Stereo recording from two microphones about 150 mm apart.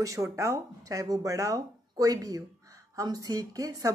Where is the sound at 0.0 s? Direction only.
20° right (ahead or behind).